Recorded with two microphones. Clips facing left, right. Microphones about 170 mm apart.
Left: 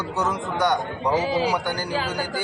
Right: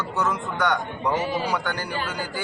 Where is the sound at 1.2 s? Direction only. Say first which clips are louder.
Left 7 dB; 90° left.